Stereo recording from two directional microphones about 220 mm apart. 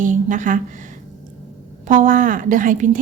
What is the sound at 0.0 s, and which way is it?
Speech, 35° right (ahead or behind).